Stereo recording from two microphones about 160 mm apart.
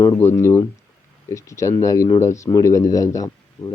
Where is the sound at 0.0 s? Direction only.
15° left (ahead or behind).